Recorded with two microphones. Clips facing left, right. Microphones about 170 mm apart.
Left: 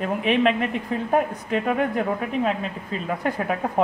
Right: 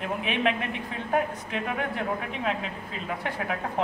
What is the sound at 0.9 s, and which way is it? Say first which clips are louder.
Speech: left 4 dB; 45° left (ahead or behind).